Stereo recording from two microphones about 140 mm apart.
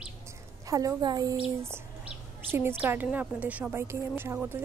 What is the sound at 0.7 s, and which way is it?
Speech, 25° right (ahead or behind).